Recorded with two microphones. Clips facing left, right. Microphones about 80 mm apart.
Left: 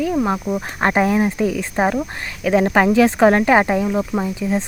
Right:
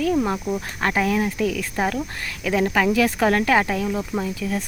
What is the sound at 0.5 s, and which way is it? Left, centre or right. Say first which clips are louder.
Speech: left 5 dB; left.